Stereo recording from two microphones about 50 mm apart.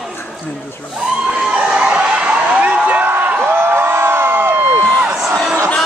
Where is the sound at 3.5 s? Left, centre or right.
Right.